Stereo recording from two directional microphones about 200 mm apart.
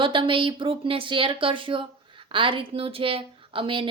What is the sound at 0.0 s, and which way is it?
A woman's voice, 25° right (ahead or behind).